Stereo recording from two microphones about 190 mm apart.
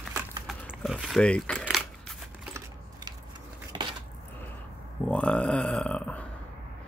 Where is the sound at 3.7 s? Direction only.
25° right (ahead or behind).